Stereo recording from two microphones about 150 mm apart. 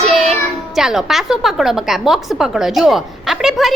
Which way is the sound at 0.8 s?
Centre (ahead or behind).